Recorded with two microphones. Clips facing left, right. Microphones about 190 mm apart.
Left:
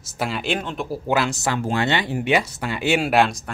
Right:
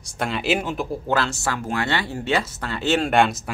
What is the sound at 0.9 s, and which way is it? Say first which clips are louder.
Speech: left 5 dB; 15° left (ahead or behind).